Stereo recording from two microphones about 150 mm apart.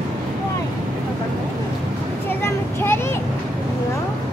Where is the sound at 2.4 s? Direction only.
15° left (ahead or behind).